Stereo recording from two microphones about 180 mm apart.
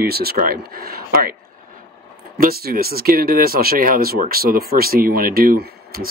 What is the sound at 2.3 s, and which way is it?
Speech, 60° right (ahead or behind).